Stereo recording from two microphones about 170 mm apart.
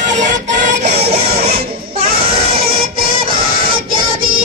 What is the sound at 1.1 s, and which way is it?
Music, 65° right (ahead or behind).